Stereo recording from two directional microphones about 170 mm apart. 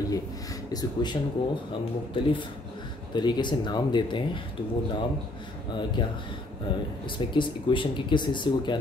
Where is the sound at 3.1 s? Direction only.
25° left (ahead or behind).